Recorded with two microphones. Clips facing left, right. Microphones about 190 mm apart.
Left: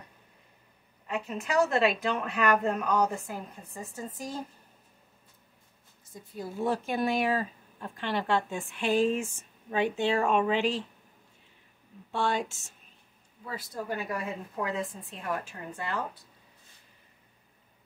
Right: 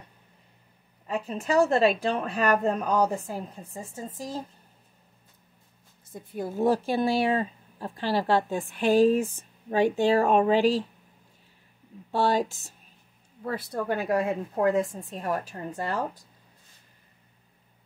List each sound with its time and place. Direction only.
1.0 s speech: 35° right (ahead or behind)
6.1 s speech: 55° right (ahead or behind)
6.5 s speech: 35° right (ahead or behind)
12.1 s speech: 35° right (ahead or behind)
13.4 s speech: 60° right (ahead or behind)
14.5 s a woman's voice: 45° right (ahead or behind)